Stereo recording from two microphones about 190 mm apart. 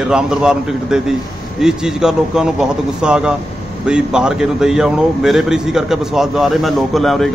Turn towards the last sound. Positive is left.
turn(degrees=0)  # may be behind; listen again after turning